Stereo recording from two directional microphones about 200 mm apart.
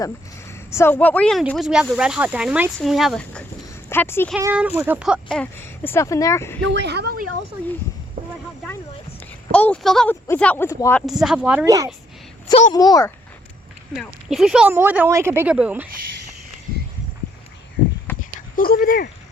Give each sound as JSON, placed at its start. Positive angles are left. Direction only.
{"t": 0.0, "sound": "speech", "side_deg": 15}
{"t": 4.4, "sound": "speech", "side_deg": -10}
{"t": 6.7, "sound": "speech", "side_deg": -60}
{"t": 9.5, "sound": "speech", "side_deg": 5}
{"t": 11.0, "sound": "speech", "side_deg": 0}
{"t": 12.7, "sound": "a child's voice", "side_deg": 20}
{"t": 13.9, "sound": "speech", "side_deg": 0}
{"t": 18.2, "sound": "dog", "side_deg": 40}